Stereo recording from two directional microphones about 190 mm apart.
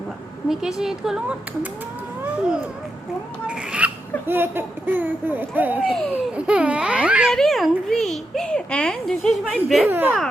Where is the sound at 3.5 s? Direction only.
5° right (ahead or behind).